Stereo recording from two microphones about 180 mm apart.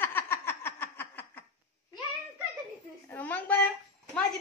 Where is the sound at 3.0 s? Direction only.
10° left (ahead or behind).